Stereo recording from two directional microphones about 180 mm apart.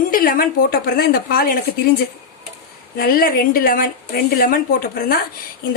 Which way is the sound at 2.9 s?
55° left (ahead or behind).